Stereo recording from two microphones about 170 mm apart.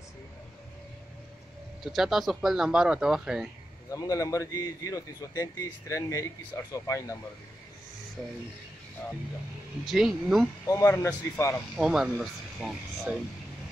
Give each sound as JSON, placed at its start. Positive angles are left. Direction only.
{"t": 1.9, "sound": "speech", "side_deg": 0}
{"t": 3.9, "sound": "speech", "side_deg": 20}
{"t": 9.8, "sound": "speech", "side_deg": 0}
{"t": 10.7, "sound": "a man's voice", "side_deg": 15}
{"t": 11.7, "sound": "speech", "side_deg": -5}